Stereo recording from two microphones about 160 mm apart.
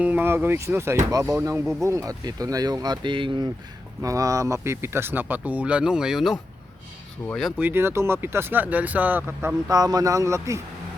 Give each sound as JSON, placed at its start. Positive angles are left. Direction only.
{"t": 0.0, "sound": "speech", "side_deg": -10}
{"t": 7.6, "sound": "speech", "side_deg": -15}